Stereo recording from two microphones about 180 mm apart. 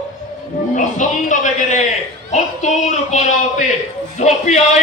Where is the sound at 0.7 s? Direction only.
45° left (ahead or behind).